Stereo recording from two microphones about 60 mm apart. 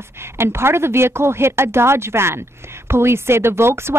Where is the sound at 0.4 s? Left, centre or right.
Right.